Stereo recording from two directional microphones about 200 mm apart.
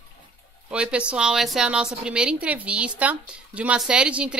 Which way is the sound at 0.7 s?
5° right (ahead or behind).